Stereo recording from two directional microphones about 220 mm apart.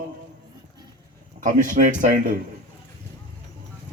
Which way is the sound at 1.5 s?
35° right (ahead or behind).